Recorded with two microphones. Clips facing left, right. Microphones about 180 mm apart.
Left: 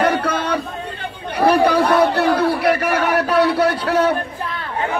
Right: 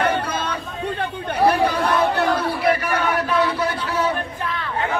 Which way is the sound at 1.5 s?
70° left (ahead or behind).